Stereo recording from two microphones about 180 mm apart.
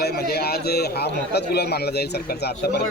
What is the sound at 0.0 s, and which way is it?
A man's voice, 60° left (ahead or behind).